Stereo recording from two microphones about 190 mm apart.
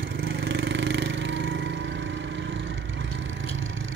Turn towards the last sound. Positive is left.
turn(degrees=-85)